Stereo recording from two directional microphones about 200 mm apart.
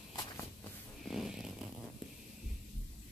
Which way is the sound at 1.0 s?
Centre (ahead or behind).